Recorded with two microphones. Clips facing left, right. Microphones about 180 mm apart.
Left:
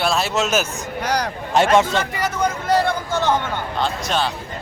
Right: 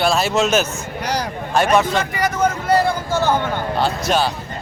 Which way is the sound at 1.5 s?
25° left (ahead or behind).